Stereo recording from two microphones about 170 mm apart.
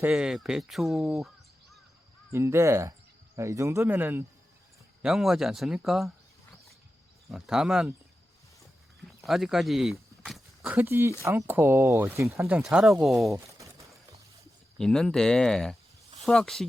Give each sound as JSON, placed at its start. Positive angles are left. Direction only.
{"t": 0.0, "sound": "speech", "side_deg": -5}
{"t": 2.3, "sound": "speech", "side_deg": -15}
{"t": 5.0, "sound": "speech", "side_deg": 0}
{"t": 7.3, "sound": "speech", "side_deg": 0}
{"t": 9.2, "sound": "speech", "side_deg": 0}
{"t": 13.5, "sound": "pour", "side_deg": -20}
{"t": 14.8, "sound": "speech", "side_deg": 0}